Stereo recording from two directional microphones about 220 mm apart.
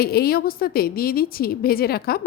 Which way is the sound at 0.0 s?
45° left (ahead or behind).